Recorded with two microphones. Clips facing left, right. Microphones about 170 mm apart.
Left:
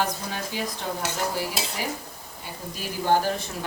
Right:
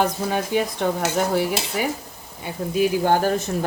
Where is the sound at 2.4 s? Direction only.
60° right (ahead or behind).